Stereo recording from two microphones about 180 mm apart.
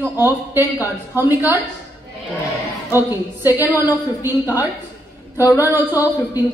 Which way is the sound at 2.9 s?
10° right (ahead or behind).